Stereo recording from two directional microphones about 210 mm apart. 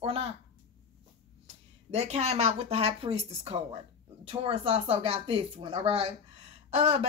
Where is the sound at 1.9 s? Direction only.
30° right (ahead or behind).